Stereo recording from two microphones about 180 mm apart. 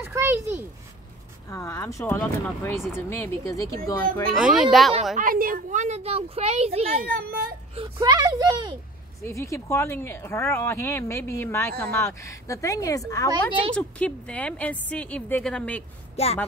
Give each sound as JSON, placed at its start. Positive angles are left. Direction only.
{"t": 0.0, "sound": "a child's voice", "side_deg": -15}
{"t": 1.5, "sound": "speech", "side_deg": 15}
{"t": 4.3, "sound": "speech", "side_deg": -5}
{"t": 5.1, "sound": "speech", "side_deg": -50}
{"t": 7.2, "sound": "speech", "side_deg": -55}
{"t": 7.7, "sound": "speech", "side_deg": -25}
{"t": 9.2, "sound": "speech", "side_deg": 15}
{"t": 13.3, "sound": "speech", "side_deg": -25}
{"t": 13.7, "sound": "speech", "side_deg": 5}
{"t": 16.2, "sound": "speech", "side_deg": 35}